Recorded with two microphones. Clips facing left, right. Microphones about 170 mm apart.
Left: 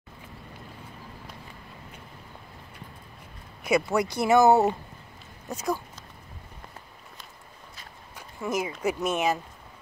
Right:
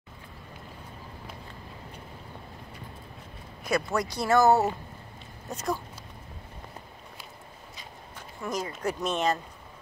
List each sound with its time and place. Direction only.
3.6 s speech: 10° left (ahead or behind)
4.1 s speech: 20° left (ahead or behind)
5.5 s speech: centre (ahead or behind)
8.2 s speech: 10° left (ahead or behind)